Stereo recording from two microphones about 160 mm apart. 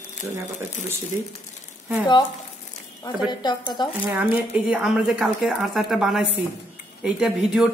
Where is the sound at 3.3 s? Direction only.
25° left (ahead or behind).